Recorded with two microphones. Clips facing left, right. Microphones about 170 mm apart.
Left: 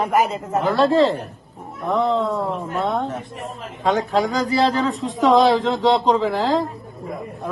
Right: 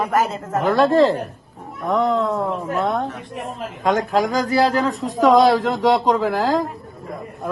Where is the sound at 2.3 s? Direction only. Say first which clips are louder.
Right 2 dB; centre (ahead or behind).